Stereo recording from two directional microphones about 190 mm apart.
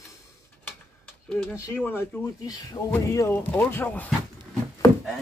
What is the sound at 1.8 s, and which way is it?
Speech, 10° left (ahead or behind).